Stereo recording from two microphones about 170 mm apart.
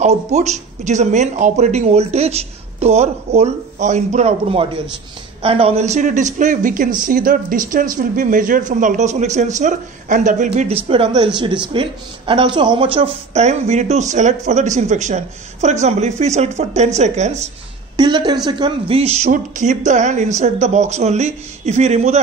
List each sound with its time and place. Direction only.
0.0 s a woman's voice: 40° right (ahead or behind)
17.9 s a woman's voice: 25° right (ahead or behind)